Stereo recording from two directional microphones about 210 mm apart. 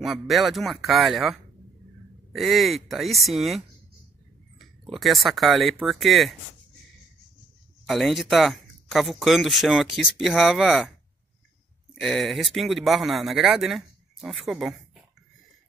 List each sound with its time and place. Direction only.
0.0 s speech: centre (ahead or behind)
4.9 s speech: centre (ahead or behind)
7.8 s speech: centre (ahead or behind)
11.9 s speech: centre (ahead or behind)